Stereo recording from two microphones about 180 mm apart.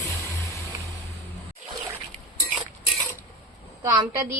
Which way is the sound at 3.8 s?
20° right (ahead or behind).